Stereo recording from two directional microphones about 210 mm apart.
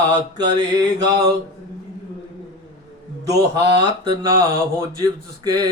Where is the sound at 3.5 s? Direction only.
20° right (ahead or behind).